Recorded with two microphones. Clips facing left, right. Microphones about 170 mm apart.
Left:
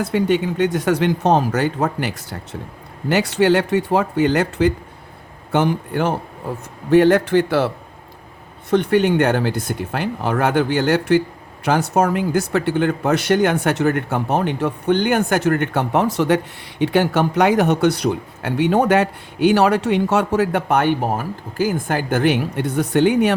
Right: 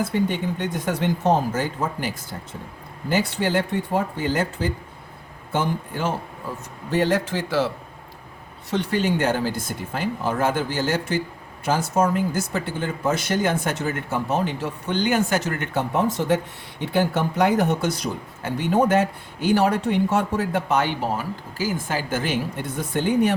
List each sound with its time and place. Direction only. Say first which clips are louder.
0.0 s speech: left 5 dB; 75° left (ahead or behind); by 7.7 s 60° left (ahead or behind)
8.7 s speech: left 7 dB; 60° left (ahead or behind)